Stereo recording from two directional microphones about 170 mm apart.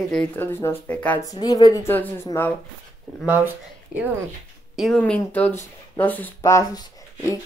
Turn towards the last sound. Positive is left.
turn(degrees=20)  # may be behind; listen again after turning